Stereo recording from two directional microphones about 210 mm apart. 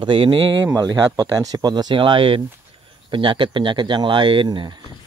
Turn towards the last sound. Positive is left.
turn(degrees=-20)  # may be behind; listen again after turning